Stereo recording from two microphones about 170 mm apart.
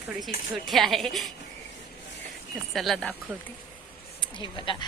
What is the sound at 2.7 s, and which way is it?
Speech, centre (ahead or behind).